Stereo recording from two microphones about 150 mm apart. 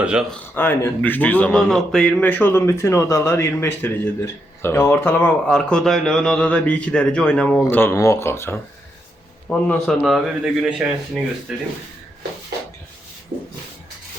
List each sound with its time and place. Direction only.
0.0 s speech: 5° right (ahead or behind)
0.3 s a man's voice: 10° left (ahead or behind)
9.5 s a man's voice: 5° left (ahead or behind)